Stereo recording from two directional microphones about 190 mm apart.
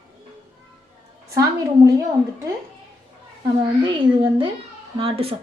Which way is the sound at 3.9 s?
25° right (ahead or behind).